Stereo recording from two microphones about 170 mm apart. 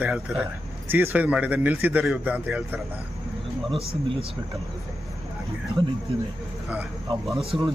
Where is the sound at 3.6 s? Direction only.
35° right (ahead or behind).